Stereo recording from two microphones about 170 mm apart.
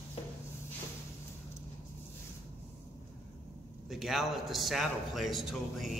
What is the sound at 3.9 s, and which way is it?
A man's voice, centre (ahead or behind).